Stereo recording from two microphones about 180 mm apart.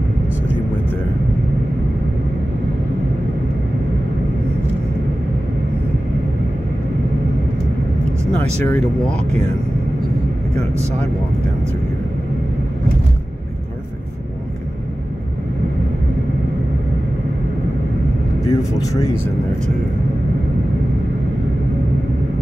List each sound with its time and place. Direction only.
8.6 s speech: 5° left (ahead or behind)
10.5 s speech: 35° right (ahead or behind)
18.5 s speech: 15° left (ahead or behind)